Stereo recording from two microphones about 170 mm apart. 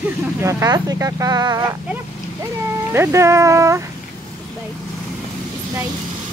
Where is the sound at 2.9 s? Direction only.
15° right (ahead or behind).